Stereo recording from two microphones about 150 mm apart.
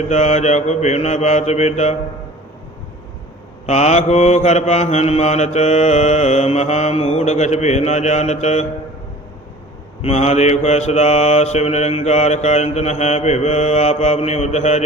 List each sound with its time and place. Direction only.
0.1 s mantra: 50° left (ahead or behind)
3.7 s mantra: 50° left (ahead or behind)
10.0 s mantra: 45° left (ahead or behind)